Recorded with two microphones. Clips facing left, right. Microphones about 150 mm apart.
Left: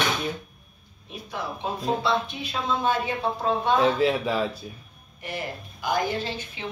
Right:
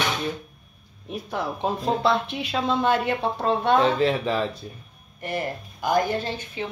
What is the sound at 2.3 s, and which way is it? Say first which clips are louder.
A woman's voice: right 3 dB; 80° right.